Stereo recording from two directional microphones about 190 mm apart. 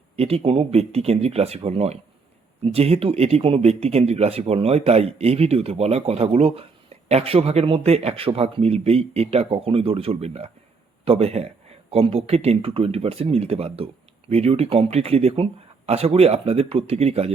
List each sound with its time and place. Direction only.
0.2 s speech: 30° right (ahead or behind)